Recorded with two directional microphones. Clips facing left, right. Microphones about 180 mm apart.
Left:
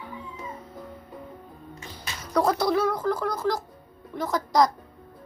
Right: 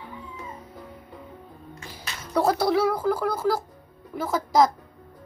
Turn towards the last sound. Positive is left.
turn(degrees=-5)  # may be behind; listen again after turning